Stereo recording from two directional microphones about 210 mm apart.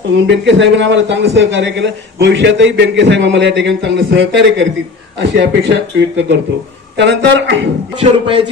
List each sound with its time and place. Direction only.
0.1 s a man's voice: 60° right (ahead or behind)
8.0 s a man's voice: 25° right (ahead or behind)